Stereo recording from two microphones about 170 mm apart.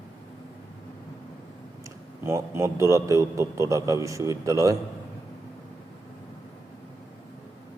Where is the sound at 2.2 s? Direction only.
15° right (ahead or behind).